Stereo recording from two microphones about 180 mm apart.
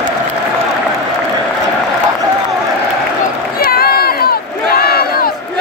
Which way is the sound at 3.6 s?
60° left (ahead or behind).